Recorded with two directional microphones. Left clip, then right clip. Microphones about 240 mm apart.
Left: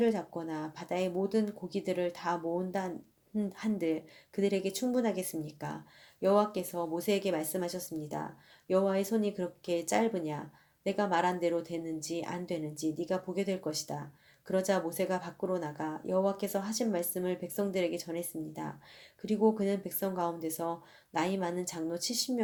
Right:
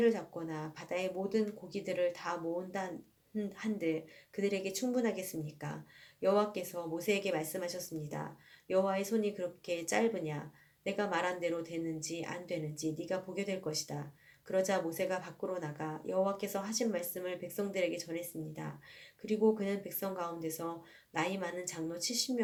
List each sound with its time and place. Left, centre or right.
0.0 s speech: left